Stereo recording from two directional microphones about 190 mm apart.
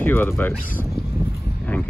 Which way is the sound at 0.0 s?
10° left (ahead or behind).